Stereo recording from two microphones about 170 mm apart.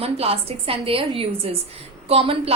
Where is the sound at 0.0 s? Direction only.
35° right (ahead or behind).